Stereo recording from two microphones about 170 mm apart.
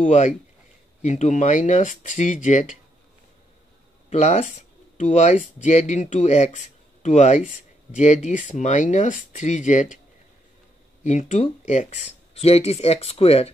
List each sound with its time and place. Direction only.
1.0 s speech: 45° left (ahead or behind)
4.1 s speech: 40° left (ahead or behind)
11.1 s speech: 45° left (ahead or behind)